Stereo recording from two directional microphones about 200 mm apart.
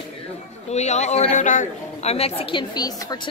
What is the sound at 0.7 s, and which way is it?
A man's voice, 35° left (ahead or behind).